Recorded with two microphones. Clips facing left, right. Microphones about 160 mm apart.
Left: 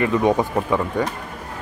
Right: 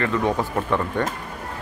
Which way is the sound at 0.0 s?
15° left (ahead or behind).